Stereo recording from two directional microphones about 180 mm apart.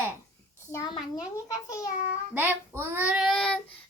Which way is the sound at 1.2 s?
20° left (ahead or behind).